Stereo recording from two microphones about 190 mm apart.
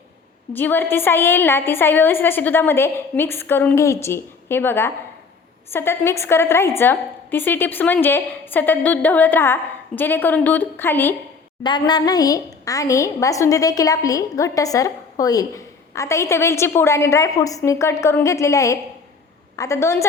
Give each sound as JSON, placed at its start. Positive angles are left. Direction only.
{"t": 0.5, "sound": "a woman's voice", "side_deg": 10}
{"t": 11.6, "sound": "a woman's voice", "side_deg": 20}